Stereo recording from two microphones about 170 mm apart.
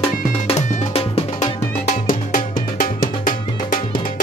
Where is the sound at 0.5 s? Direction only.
35° left (ahead or behind).